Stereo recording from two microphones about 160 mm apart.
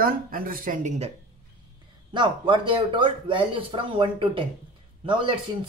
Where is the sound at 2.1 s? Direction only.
30° right (ahead or behind).